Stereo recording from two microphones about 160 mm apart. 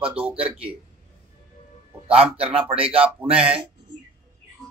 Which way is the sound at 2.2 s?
10° right (ahead or behind).